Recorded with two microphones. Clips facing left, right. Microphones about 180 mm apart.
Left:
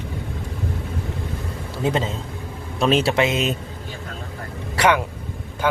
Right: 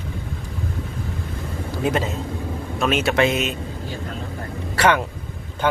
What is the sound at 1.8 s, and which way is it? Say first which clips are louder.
A man's voice: even; 25° left (ahead or behind).